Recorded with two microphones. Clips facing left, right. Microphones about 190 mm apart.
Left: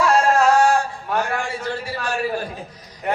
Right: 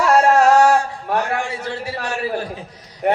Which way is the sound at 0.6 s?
70° right (ahead or behind).